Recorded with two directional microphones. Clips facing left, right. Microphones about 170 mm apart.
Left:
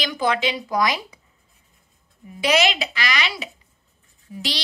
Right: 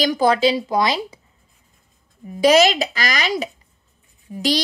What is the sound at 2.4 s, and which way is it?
A woman's voice, 40° right (ahead or behind).